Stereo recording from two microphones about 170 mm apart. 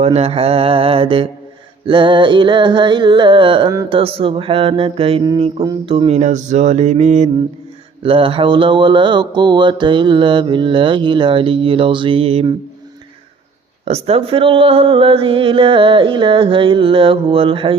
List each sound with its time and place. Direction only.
0.0 s speech: 35° right (ahead or behind)
8.0 s speech: 30° right (ahead or behind)
13.8 s speech: 35° right (ahead or behind)